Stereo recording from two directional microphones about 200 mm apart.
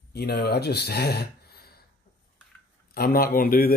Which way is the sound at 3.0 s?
50° left (ahead or behind).